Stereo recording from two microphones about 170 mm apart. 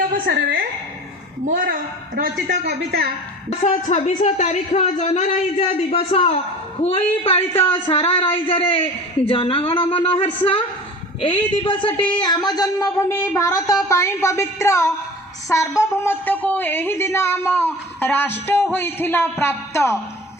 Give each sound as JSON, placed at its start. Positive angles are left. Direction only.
{"t": 0.1, "sound": "a woman's voice", "side_deg": -60}
{"t": 2.1, "sound": "a woman's voice", "side_deg": -70}
{"t": 3.6, "sound": "speech", "side_deg": 45}
{"t": 11.2, "sound": "a sound", "side_deg": 30}
{"t": 15.8, "sound": "speech", "side_deg": 15}